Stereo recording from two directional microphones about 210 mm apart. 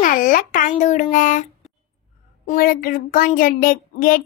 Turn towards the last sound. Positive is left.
turn(degrees=40)  # may be behind; listen again after turning